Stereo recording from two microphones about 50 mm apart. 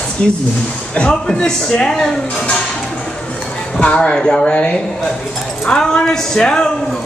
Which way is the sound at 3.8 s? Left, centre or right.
Left.